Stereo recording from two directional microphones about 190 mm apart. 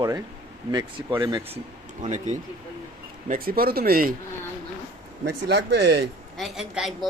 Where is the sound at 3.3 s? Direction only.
50° right (ahead or behind).